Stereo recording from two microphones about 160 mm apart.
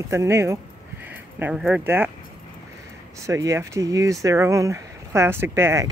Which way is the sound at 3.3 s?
20° right (ahead or behind).